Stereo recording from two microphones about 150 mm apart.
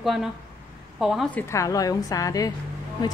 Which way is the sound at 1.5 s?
25° left (ahead or behind).